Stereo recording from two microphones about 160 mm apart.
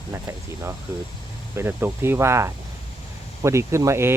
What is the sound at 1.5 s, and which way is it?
Speech, 15° right (ahead or behind).